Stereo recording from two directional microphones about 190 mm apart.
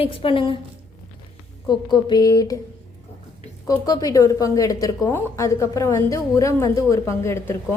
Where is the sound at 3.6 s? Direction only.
20° left (ahead or behind).